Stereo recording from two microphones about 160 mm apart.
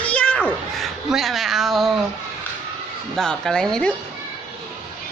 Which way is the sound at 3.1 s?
5° left (ahead or behind).